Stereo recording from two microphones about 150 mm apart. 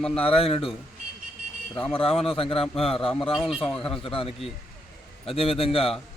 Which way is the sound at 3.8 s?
35° left (ahead or behind).